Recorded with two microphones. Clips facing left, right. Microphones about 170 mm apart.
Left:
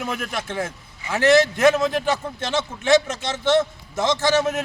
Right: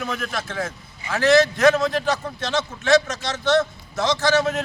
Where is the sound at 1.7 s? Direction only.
15° left (ahead or behind).